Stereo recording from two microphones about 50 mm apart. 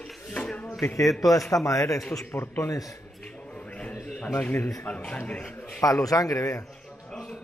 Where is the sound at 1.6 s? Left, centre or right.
Left.